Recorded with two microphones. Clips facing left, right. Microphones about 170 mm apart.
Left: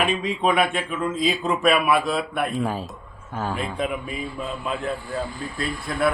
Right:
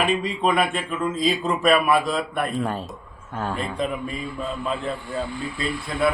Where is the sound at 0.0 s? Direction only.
Centre (ahead or behind).